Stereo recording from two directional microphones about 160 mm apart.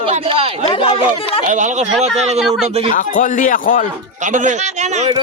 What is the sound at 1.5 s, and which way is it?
Speech, 50° right (ahead or behind).